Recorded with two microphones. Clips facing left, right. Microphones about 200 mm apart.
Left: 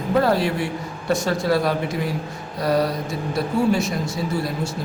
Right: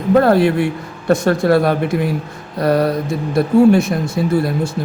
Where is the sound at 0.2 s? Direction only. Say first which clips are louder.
Right 6 dB; 55° right (ahead or behind).